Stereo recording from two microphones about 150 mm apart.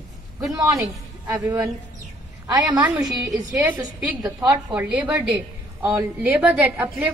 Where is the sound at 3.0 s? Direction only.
5° right (ahead or behind).